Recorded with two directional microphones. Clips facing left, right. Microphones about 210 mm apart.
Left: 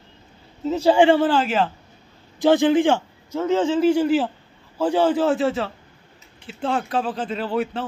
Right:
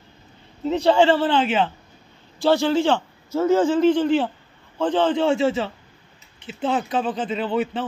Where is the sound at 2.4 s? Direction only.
15° left (ahead or behind).